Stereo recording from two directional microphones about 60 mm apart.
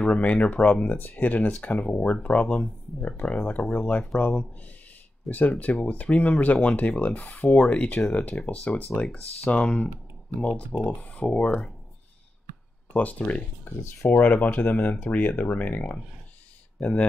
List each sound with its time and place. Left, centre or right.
0.0 s speech: left
10.9 s speech: left
12.9 s speech: left
13.7 s speech: left